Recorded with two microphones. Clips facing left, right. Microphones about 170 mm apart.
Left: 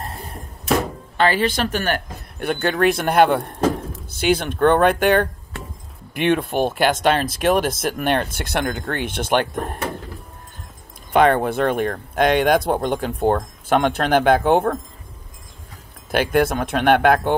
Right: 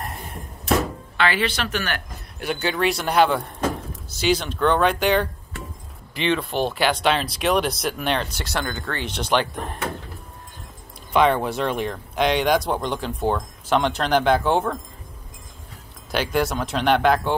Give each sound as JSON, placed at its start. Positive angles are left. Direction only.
{"t": 0.0, "sound": "a sound", "side_deg": 30}
{"t": 1.1, "sound": "speech", "side_deg": 45}
{"t": 11.1, "sound": "speech", "side_deg": 50}
{"t": 16.1, "sound": "speech", "side_deg": 55}